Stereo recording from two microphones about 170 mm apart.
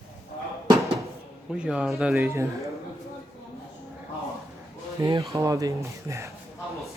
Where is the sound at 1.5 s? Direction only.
5° right (ahead or behind).